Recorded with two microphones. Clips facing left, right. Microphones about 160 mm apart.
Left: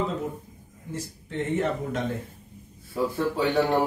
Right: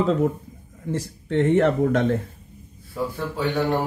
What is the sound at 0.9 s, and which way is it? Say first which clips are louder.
Speech: right 9 dB; 75° right (ahead or behind).